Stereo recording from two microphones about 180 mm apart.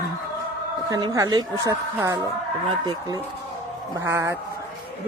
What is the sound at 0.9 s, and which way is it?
A woman's voice, 20° right (ahead or behind).